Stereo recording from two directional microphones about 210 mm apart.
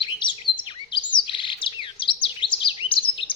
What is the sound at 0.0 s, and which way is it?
Chirp, 20° left (ahead or behind).